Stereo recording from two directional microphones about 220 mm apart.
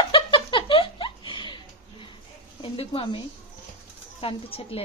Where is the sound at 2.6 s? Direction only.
25° left (ahead or behind).